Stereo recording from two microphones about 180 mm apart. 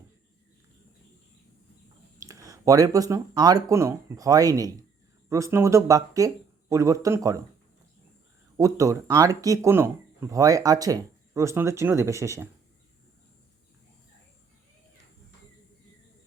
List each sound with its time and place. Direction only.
2.1 s speech: 20° right (ahead or behind)
8.5 s speech: 20° right (ahead or behind)